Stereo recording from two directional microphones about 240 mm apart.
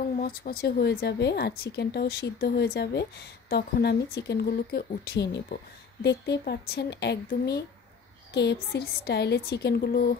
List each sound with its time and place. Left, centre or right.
0.2 s a woman's voice: left